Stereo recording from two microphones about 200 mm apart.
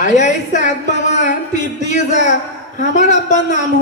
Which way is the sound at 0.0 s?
35° left (ahead or behind).